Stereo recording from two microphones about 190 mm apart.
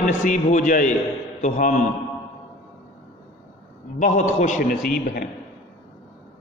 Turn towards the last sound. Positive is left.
turn(degrees=50)  # may be behind; listen again after turning